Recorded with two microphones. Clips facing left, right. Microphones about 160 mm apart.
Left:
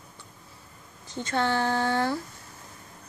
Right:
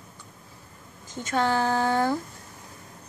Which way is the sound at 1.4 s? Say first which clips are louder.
Right 2 dB; 10° right (ahead or behind).